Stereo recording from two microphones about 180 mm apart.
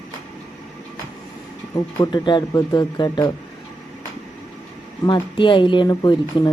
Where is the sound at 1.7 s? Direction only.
20° left (ahead or behind).